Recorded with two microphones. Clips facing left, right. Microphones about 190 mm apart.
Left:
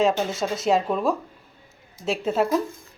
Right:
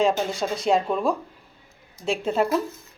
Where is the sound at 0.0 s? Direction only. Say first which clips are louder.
Even; centre (ahead or behind).